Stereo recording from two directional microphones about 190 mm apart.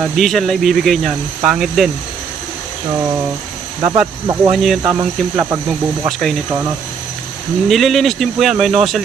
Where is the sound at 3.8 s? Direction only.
15° right (ahead or behind).